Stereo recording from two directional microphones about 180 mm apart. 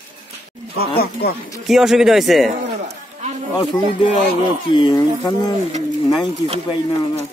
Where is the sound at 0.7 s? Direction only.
60° left (ahead or behind).